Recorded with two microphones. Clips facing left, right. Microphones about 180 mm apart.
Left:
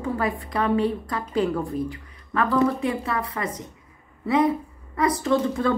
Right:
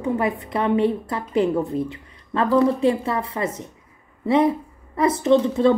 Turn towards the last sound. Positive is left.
turn(degrees=-20)  # may be behind; listen again after turning